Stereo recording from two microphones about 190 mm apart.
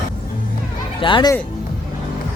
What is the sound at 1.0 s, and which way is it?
Speech, 25° left (ahead or behind).